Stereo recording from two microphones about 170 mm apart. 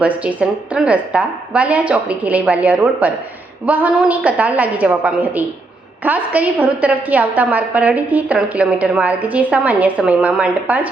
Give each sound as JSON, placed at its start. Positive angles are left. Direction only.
{"t": 0.0, "sound": "a woman's voice", "side_deg": -5}